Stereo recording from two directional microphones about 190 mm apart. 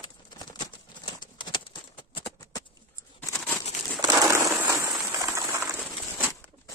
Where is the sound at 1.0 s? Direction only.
25° left (ahead or behind).